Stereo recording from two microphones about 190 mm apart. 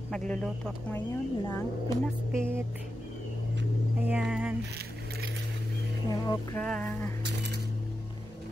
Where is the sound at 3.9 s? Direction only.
5° right (ahead or behind).